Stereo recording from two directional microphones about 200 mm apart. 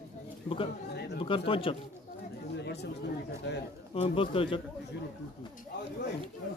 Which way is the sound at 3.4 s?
65° left (ahead or behind).